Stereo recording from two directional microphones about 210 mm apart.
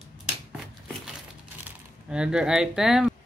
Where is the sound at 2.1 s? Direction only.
5° right (ahead or behind).